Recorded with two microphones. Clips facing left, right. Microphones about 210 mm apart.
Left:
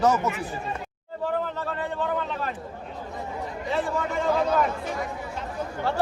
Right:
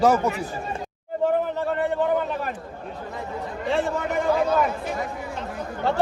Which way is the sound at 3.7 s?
25° right (ahead or behind).